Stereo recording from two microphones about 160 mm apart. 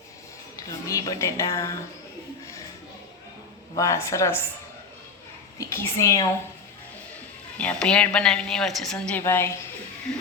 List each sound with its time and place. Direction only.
0.5 s speech: 20° left (ahead or behind)
3.8 s speech: 20° left (ahead or behind)
5.5 s speech: 15° left (ahead or behind)
7.6 s a woman's voice: 5° left (ahead or behind)